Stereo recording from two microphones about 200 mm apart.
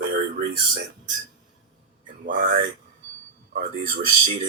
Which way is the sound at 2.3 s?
40° right (ahead or behind).